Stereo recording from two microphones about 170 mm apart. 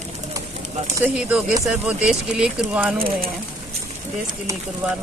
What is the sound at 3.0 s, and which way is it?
Speech, 60° right (ahead or behind).